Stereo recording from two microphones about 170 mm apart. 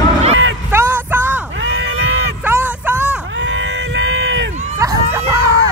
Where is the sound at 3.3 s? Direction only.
90° right.